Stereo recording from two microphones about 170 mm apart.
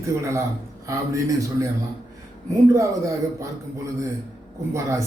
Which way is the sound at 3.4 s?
20° right (ahead or behind).